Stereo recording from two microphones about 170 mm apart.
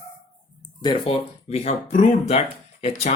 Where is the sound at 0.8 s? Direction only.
35° left (ahead or behind).